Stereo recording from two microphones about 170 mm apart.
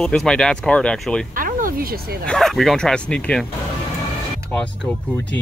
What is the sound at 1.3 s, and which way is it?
Speech, 55° right (ahead or behind).